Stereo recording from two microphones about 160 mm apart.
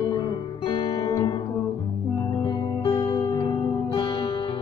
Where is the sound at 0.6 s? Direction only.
30° left (ahead or behind).